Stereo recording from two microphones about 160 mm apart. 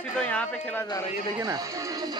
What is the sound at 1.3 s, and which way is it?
Speech, 20° right (ahead or behind).